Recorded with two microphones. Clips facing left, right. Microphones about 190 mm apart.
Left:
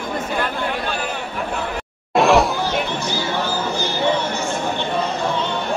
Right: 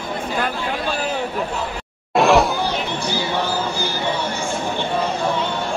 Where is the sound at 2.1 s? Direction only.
Centre (ahead or behind).